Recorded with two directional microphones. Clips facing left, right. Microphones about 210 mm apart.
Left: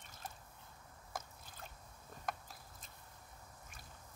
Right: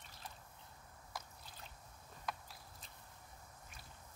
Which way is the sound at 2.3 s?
50° left (ahead or behind).